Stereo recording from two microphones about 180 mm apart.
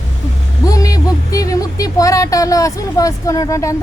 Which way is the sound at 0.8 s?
20° left (ahead or behind).